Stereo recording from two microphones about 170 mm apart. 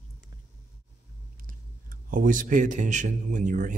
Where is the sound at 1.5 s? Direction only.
50° right (ahead or behind).